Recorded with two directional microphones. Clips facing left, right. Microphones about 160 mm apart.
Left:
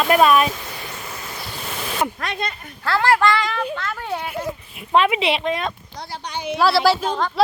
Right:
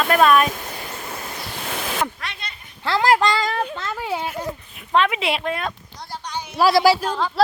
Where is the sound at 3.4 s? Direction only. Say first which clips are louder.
Right 1 dB; 40° right (ahead or behind).